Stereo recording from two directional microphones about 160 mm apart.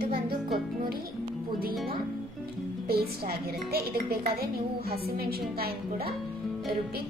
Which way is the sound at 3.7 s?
75° right (ahead or behind).